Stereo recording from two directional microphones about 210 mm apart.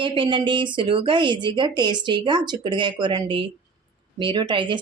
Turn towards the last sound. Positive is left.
turn(degrees=-20)  # may be behind; listen again after turning